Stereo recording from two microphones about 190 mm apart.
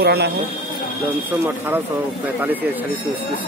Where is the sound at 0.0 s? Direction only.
60° right (ahead or behind).